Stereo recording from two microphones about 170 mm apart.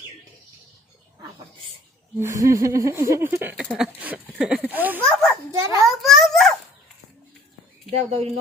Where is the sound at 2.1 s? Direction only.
15° right (ahead or behind).